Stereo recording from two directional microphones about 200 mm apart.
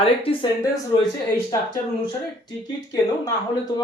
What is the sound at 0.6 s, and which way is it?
Speech, 15° left (ahead or behind).